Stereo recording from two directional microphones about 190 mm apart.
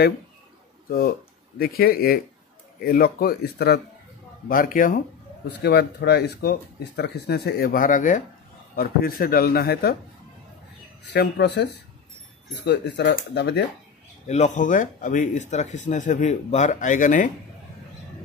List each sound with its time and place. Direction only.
0.8 s a man's voice: 50° left (ahead or behind)
5.6 s a man's voice: 60° left (ahead or behind)
11.1 s speech: 65° left (ahead or behind)
14.2 s speech: 35° left (ahead or behind)